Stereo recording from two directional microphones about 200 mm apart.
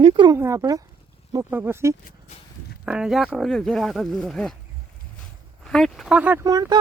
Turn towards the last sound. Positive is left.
turn(degrees=-20)  # may be behind; listen again after turning